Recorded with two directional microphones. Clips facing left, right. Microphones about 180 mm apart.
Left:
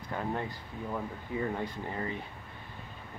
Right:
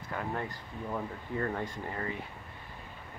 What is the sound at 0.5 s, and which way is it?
Speech, 5° left (ahead or behind).